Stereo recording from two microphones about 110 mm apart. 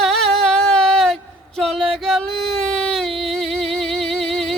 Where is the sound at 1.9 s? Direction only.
5° left (ahead or behind).